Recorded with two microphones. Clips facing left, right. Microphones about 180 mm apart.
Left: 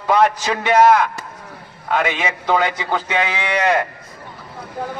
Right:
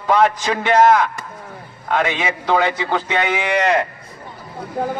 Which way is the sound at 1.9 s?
10° left (ahead or behind).